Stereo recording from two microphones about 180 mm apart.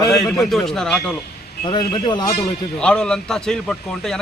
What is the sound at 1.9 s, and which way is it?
Speech, 25° left (ahead or behind).